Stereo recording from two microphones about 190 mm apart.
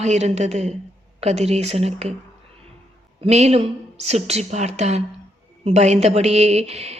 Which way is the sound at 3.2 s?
35° right (ahead or behind).